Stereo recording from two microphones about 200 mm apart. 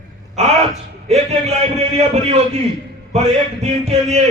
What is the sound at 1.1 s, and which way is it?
Speech, 35° right (ahead or behind).